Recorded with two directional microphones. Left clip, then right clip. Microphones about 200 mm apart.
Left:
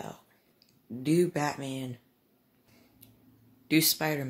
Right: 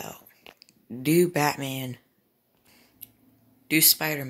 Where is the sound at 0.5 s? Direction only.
25° right (ahead or behind).